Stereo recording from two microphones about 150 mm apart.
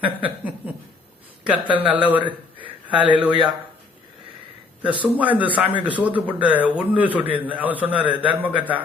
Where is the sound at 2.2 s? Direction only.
35° right (ahead or behind).